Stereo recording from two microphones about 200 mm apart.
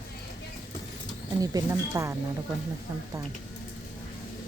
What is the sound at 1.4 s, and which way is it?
Speech, 20° right (ahead or behind).